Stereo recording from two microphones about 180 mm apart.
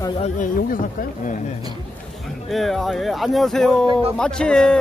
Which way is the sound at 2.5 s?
Centre (ahead or behind).